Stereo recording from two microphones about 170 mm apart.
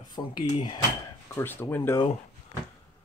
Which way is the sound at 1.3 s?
10° left (ahead or behind).